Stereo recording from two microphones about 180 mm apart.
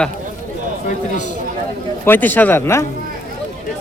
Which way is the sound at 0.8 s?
45° left (ahead or behind).